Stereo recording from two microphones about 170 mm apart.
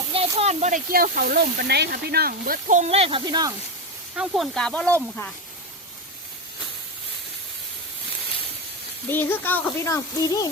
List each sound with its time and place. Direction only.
0.1 s a sound: 35° right (ahead or behind)
0.9 s speech: 60° right (ahead or behind); by 3.5 s 25° right (ahead or behind)
4.2 s speech: centre (ahead or behind)
9.0 s speech: 10° left (ahead or behind)